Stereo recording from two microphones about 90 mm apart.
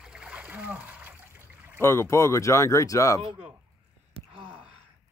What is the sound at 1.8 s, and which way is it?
Speech, 30° left (ahead or behind).